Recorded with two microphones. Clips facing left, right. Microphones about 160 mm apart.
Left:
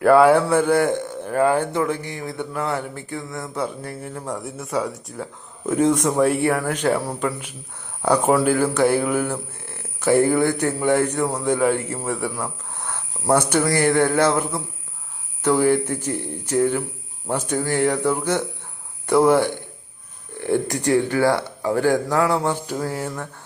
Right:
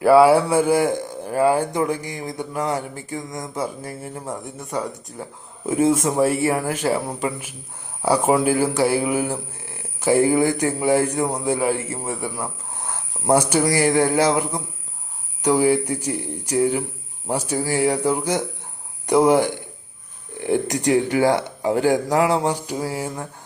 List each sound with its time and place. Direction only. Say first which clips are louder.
0.0 s speech: right 1 dB; 5° right (ahead or behind)
3.8 s speech: even; 5° right (ahead or behind)